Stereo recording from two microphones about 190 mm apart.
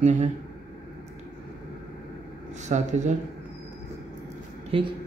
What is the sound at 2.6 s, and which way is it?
Speech, 40° right (ahead or behind).